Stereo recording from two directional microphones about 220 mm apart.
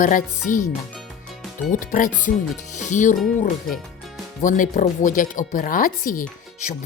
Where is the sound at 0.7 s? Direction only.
Centre (ahead or behind).